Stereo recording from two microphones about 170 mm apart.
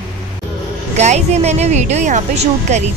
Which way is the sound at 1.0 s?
40° right (ahead or behind).